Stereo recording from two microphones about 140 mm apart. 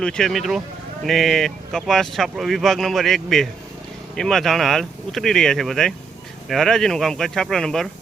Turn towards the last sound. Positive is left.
turn(degrees=5)  # may be behind; listen again after turning